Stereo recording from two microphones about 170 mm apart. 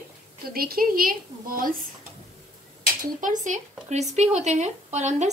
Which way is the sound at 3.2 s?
45° right (ahead or behind).